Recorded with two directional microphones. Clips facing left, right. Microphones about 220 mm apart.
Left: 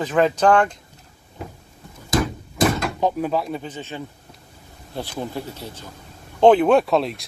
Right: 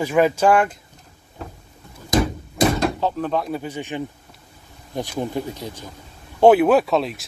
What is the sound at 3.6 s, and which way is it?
Speech, 10° right (ahead or behind).